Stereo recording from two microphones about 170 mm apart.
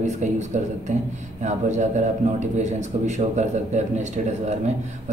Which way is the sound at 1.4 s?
45° right (ahead or behind).